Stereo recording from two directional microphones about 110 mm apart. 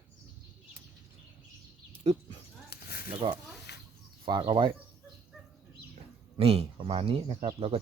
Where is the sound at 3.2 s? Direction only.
45° right (ahead or behind).